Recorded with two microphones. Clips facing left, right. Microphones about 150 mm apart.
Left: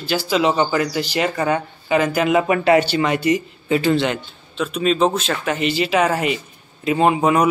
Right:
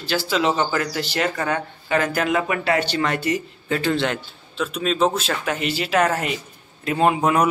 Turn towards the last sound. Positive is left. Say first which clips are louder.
# left 2 dB
turn(degrees=5)  # may be behind; listen again after turning